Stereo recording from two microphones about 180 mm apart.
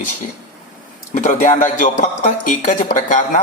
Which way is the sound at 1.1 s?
45° left (ahead or behind).